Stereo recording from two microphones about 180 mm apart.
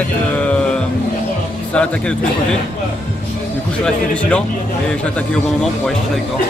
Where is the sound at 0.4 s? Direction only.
10° left (ahead or behind).